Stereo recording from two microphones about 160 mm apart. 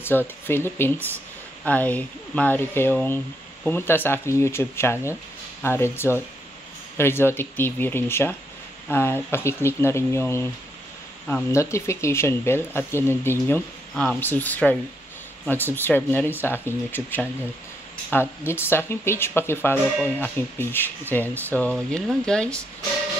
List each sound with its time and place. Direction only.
0.1 s speech: 10° left (ahead or behind)
11.5 s speech: 20° left (ahead or behind)